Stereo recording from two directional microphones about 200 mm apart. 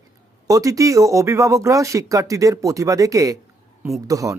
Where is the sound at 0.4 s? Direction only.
15° right (ahead or behind).